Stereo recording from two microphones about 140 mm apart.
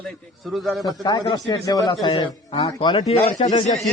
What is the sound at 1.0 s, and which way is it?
A man's voice, 30° left (ahead or behind).